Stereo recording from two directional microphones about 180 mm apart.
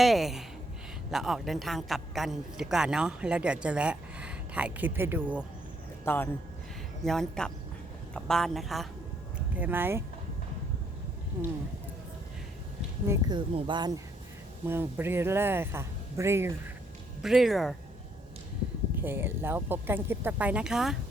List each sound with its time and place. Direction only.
0.0 s a woman's voice: centre (ahead or behind)
6.1 s a man's voice: 15° left (ahead or behind)
7.0 s a woman's voice: centre (ahead or behind)
9.6 s speech: 10° right (ahead or behind)
13.1 s speech: 25° right (ahead or behind)
14.7 s speech: 10° right (ahead or behind)
17.2 s a woman's voice: centre (ahead or behind)
19.0 s speech: 10° right (ahead or behind)